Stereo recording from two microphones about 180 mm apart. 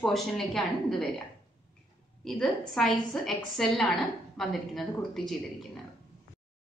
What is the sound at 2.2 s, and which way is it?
A woman's voice, 5° left (ahead or behind).